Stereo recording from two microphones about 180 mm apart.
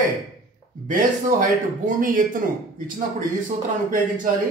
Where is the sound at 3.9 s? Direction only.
45° right (ahead or behind).